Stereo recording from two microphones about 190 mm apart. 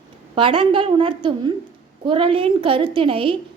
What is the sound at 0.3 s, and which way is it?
A woman's voice, 25° right (ahead or behind).